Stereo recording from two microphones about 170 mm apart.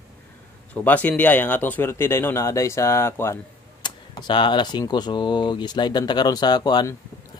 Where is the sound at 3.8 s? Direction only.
25° left (ahead or behind).